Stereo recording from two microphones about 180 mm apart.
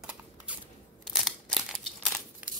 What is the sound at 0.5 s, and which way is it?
Crunch, 5° right (ahead or behind).